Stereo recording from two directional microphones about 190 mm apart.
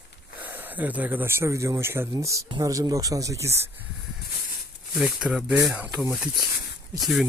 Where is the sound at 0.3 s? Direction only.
10° right (ahead or behind).